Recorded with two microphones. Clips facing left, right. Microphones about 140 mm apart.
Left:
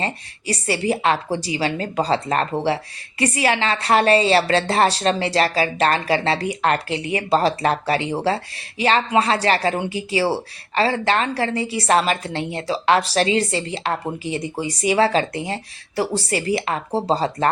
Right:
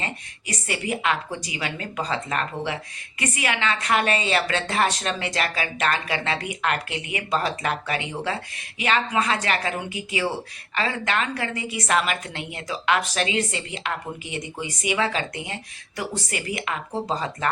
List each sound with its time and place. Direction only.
0.0 s speech: 35° left (ahead or behind)